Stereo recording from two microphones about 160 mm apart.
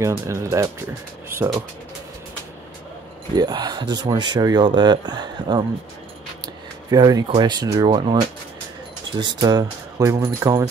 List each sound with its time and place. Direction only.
0.0 s speech: 20° right (ahead or behind)
3.3 s speech: 25° right (ahead or behind)
9.2 s speech: 25° right (ahead or behind)